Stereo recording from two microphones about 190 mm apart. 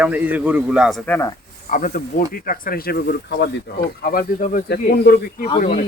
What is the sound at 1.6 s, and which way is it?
Speech, 45° left (ahead or behind).